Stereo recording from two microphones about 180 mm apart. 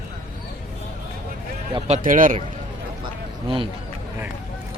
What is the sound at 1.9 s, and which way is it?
Speech, 50° right (ahead or behind).